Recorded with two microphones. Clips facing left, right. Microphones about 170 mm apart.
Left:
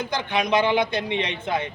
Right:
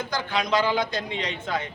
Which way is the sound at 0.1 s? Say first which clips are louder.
Left 2 dB; 20° left (ahead or behind).